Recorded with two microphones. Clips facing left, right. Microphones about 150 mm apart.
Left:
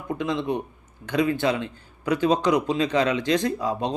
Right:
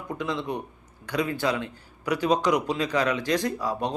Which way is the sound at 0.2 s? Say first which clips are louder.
Left 4 dB; 20° left (ahead or behind).